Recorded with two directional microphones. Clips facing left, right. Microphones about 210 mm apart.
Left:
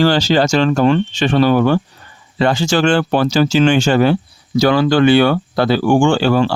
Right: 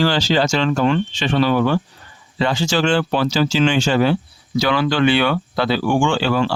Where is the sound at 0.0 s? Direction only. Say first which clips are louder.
Left 4 dB; 45° left (ahead or behind).